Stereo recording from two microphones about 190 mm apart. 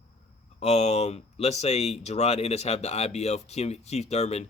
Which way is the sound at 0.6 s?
35° left (ahead or behind).